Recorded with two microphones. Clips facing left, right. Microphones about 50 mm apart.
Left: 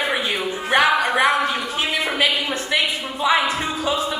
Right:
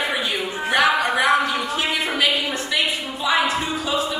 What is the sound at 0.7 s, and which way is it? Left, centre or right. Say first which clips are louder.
Music: left 1 dB; left.